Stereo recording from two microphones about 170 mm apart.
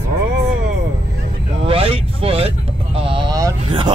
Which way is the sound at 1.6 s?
35° right (ahead or behind).